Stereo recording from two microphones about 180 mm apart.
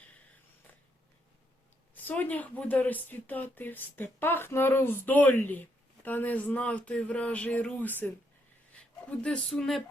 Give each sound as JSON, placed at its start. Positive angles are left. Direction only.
{"t": 2.0, "sound": "speech", "side_deg": 10}